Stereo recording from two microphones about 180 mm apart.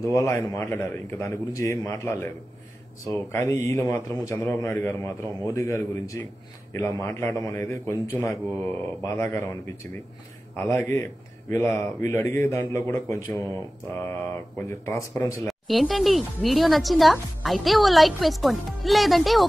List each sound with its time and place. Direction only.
0.0 s a man's voice: 15° left (ahead or behind)
14.7 s a man's voice: 15° left (ahead or behind)
15.4 s speech: centre (ahead or behind)